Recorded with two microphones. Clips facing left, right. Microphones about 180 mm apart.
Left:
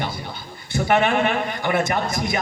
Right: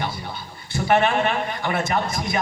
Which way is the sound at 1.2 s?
55° left (ahead or behind).